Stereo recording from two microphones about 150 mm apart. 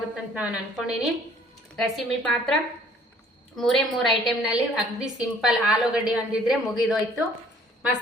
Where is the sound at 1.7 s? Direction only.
5° left (ahead or behind).